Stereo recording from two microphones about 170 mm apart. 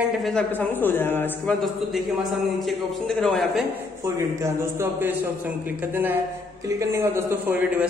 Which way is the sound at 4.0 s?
15° right (ahead or behind).